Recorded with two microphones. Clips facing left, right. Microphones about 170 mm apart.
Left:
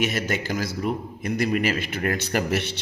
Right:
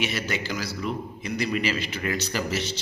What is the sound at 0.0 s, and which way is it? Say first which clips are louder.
A man's voice: left 3 dB; 45° left (ahead or behind).